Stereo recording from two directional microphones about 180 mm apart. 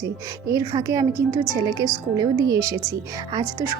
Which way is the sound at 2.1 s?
20° right (ahead or behind).